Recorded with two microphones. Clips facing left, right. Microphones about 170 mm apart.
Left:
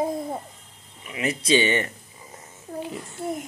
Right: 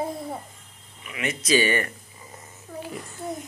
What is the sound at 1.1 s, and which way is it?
Speech, 30° left (ahead or behind).